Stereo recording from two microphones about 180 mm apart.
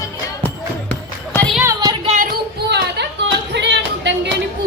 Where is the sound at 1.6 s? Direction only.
20° right (ahead or behind).